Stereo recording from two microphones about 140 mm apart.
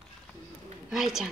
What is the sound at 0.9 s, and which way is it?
Speech, 5° right (ahead or behind).